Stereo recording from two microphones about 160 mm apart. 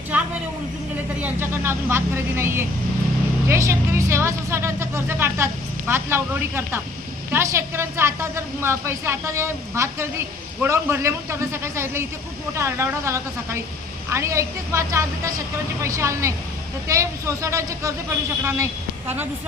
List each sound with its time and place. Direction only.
0.1 s vehicle: 10° right (ahead or behind)
1.2 s a woman's voice: 15° right (ahead or behind)